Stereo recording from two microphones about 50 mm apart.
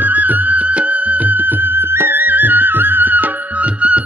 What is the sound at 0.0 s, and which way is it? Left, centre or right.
Music, right.